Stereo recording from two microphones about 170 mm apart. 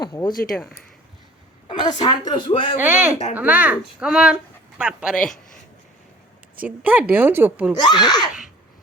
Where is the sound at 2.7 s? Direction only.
10° right (ahead or behind).